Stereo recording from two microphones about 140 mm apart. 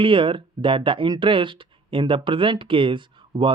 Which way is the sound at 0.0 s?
35° right (ahead or behind).